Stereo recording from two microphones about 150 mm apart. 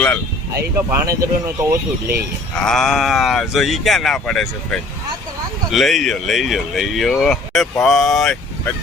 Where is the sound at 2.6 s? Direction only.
5° left (ahead or behind).